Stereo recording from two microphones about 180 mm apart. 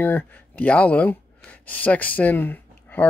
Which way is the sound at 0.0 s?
10° left (ahead or behind).